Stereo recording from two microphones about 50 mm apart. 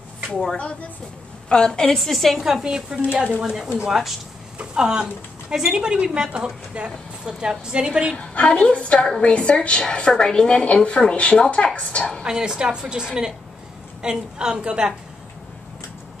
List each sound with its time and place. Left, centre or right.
1.5 s a woman's voice: centre
2.0 s a woman's voice: centre
2.6 s speech: centre
8.2 s a woman's voice: left
12.2 s speech: centre